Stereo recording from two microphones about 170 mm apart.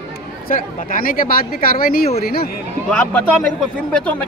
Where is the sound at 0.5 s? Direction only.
50° left (ahead or behind).